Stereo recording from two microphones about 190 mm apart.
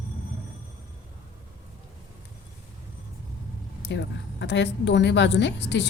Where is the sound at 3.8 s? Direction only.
65° left (ahead or behind).